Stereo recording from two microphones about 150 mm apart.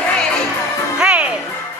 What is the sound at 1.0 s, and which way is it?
Music, 5° right (ahead or behind).